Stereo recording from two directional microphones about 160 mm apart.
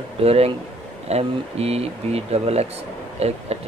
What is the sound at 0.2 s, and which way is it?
Speech, 40° right (ahead or behind).